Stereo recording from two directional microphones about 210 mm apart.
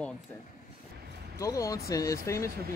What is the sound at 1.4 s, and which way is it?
Speech, 15° left (ahead or behind).